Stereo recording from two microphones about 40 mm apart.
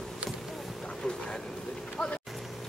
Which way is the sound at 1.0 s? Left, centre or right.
Centre.